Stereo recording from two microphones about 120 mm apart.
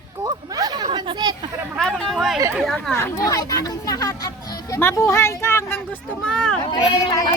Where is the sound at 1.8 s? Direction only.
5° left (ahead or behind).